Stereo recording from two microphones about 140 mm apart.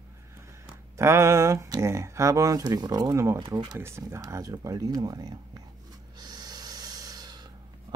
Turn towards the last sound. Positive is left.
turn(degrees=-30)  # may be behind; listen again after turning